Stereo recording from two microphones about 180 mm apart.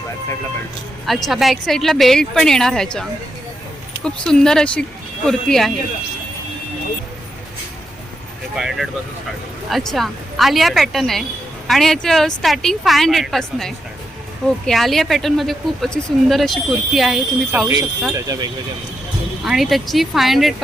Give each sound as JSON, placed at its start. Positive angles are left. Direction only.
{"t": 1.3, "sound": "speech", "side_deg": 0}
{"t": 8.5, "sound": "speech", "side_deg": 0}
{"t": 18.1, "sound": "speech", "side_deg": -20}
{"t": 19.5, "sound": "speech", "side_deg": 0}